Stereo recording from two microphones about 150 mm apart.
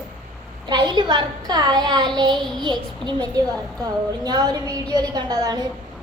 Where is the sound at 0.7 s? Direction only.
30° right (ahead or behind).